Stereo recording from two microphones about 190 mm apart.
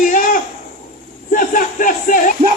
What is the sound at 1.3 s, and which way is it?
Music, 45° left (ahead or behind).